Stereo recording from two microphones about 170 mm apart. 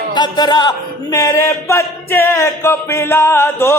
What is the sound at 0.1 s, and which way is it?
Music, 25° left (ahead or behind).